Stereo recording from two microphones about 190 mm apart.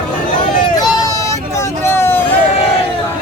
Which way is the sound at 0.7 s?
20° left (ahead or behind).